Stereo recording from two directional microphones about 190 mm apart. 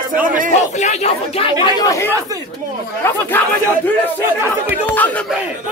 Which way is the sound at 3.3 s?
10° left (ahead or behind).